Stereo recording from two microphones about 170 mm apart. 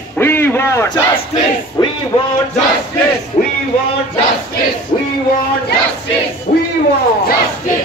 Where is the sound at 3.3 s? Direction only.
40° left (ahead or behind).